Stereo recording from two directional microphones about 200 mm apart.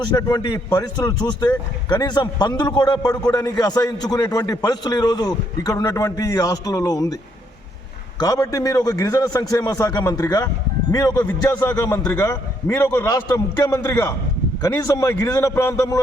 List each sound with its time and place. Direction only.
0.0 s a man's voice: 20° left (ahead or behind)
8.2 s a man's voice: 20° left (ahead or behind)